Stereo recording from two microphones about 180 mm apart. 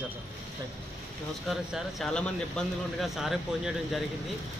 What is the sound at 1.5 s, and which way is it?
Speech, centre (ahead or behind).